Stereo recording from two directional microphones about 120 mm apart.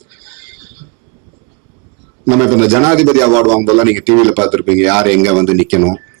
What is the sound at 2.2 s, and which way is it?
A man's voice, 15° right (ahead or behind).